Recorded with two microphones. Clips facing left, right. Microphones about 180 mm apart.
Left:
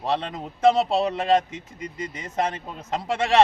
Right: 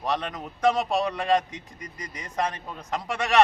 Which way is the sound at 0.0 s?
25° left (ahead or behind).